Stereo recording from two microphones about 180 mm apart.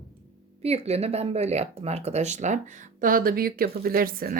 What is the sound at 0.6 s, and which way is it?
Speech, 35° right (ahead or behind).